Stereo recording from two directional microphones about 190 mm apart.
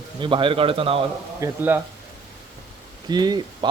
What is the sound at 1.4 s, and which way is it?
Speech, 10° right (ahead or behind).